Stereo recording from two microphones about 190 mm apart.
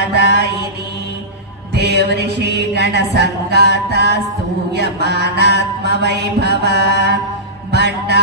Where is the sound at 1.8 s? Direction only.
60° right (ahead or behind).